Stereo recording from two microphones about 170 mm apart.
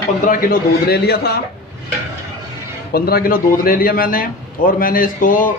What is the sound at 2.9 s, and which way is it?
A man's voice, 65° left (ahead or behind).